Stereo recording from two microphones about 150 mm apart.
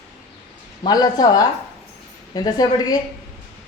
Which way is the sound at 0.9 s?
25° left (ahead or behind).